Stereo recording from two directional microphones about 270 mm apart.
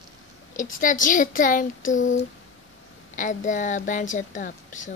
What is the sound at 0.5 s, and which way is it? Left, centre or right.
Speech, left.